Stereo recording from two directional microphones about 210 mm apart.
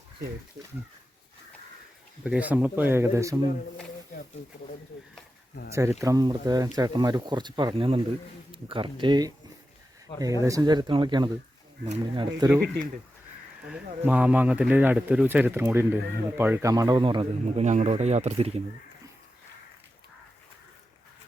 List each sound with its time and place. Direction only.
2.2 s speech: 5° right (ahead or behind)
5.7 s speech: 15° right (ahead or behind)
10.1 s speech: 20° left (ahead or behind)
10.4 s speech: 15° right (ahead or behind)
13.7 s speech: 5° right (ahead or behind); by 18.6 s 30° right (ahead or behind)